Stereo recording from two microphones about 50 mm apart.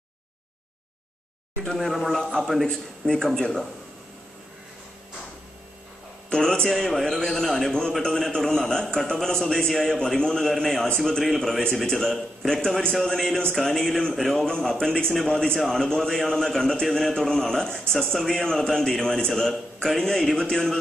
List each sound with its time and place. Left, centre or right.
1.8 s a man's voice: centre
6.3 s a man's voice: centre
14.4 s a man's voice: centre
15.5 s a man's voice: centre